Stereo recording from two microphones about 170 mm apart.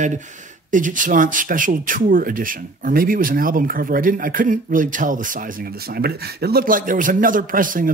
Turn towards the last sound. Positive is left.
turn(degrees=-55)  # may be behind; listen again after turning